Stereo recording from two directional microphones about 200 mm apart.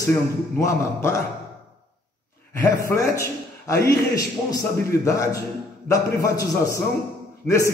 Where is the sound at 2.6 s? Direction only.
15° left (ahead or behind).